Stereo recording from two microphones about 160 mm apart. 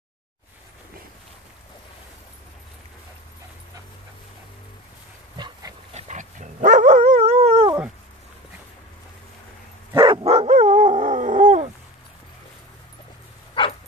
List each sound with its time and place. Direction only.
5.4 s dog: 20° right (ahead or behind)
5.9 s dog: 50° right (ahead or behind)
9.9 s dog: 30° right (ahead or behind)
10.2 s dog: 40° right (ahead or behind)
13.6 s dog: 30° left (ahead or behind)